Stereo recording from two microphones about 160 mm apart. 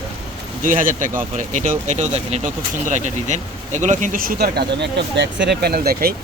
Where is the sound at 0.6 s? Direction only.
55° right (ahead or behind).